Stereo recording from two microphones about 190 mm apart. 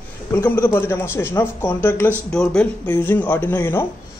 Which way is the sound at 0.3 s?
15° left (ahead or behind).